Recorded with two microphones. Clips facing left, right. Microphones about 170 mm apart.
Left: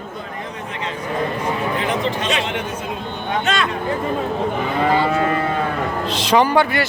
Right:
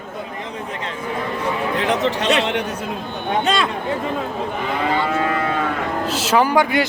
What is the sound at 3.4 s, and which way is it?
Speech, 30° right (ahead or behind).